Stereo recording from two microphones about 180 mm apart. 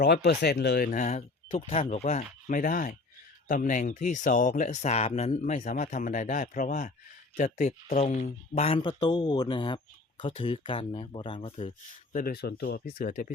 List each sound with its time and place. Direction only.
0.0 s speech: 60° left (ahead or behind); by 11.7 s 30° left (ahead or behind)
12.1 s speech: 55° left (ahead or behind)